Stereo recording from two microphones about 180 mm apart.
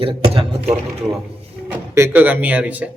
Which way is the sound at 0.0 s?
30° right (ahead or behind).